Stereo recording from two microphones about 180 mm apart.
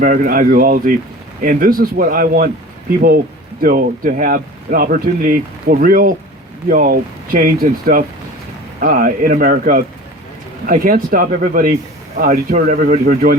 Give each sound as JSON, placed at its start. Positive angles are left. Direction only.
{"t": 0.0, "sound": "speech", "side_deg": -50}
{"t": 3.6, "sound": "speech", "side_deg": -50}